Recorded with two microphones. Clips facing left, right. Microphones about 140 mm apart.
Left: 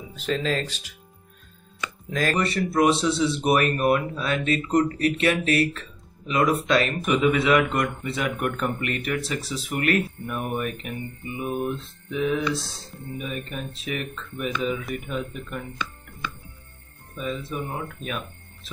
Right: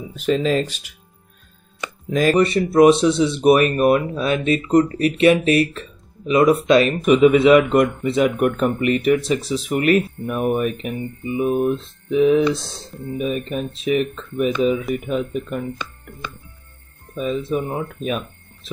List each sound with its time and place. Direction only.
0.1 s speech: 15° right (ahead or behind)
1.8 s speech: 20° right (ahead or behind)